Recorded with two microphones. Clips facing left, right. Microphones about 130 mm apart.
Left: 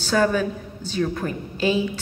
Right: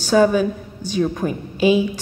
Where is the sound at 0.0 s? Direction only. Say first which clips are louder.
Right 5 dB; 15° right (ahead or behind).